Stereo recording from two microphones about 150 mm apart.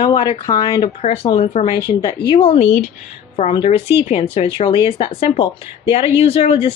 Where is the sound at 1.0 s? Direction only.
40° left (ahead or behind).